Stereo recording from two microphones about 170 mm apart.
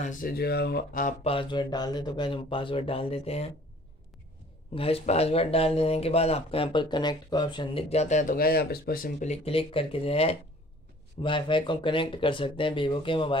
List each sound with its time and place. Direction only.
0.0 s speech: 50° left (ahead or behind)
1.2 s speech: 30° left (ahead or behind)
4.7 s speech: 35° left (ahead or behind)